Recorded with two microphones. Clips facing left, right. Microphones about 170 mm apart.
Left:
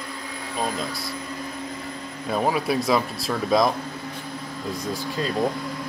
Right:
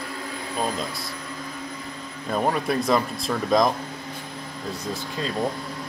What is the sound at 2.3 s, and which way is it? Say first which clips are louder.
Speech: left 1 dB; 5° left (ahead or behind).